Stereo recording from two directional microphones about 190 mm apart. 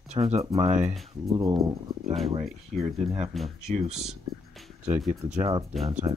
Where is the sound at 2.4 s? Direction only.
Centre (ahead or behind).